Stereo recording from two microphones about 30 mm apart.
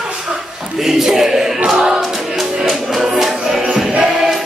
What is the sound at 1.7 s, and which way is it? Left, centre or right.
Choir, centre.